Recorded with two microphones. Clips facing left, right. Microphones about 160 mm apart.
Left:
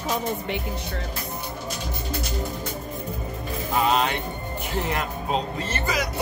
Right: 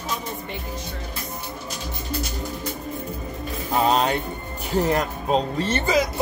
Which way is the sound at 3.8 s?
35° right (ahead or behind).